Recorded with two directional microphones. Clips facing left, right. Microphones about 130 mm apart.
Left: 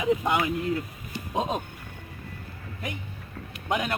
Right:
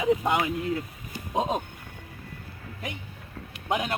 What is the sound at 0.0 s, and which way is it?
Speech, 30° right (ahead or behind).